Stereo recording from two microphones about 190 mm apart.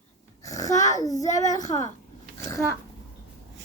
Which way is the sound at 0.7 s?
40° left (ahead or behind).